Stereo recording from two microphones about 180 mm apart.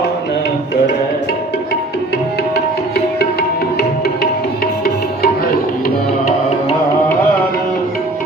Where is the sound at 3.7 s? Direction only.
60° left (ahead or behind).